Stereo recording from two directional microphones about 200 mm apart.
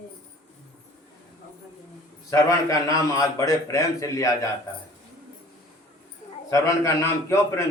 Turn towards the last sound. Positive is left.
turn(degrees=15)  # may be behind; listen again after turning